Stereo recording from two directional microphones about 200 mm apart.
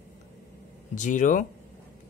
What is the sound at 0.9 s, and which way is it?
Speech, 40° left (ahead or behind).